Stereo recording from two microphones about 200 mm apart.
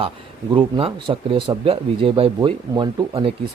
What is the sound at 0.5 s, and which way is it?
Speech, 25° right (ahead or behind).